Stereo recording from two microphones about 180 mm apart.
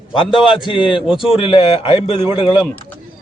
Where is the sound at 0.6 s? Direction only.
25° left (ahead or behind).